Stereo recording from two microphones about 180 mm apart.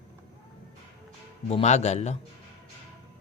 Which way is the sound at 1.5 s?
40° left (ahead or behind).